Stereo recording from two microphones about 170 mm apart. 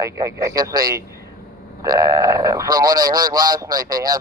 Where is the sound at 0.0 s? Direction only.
20° right (ahead or behind).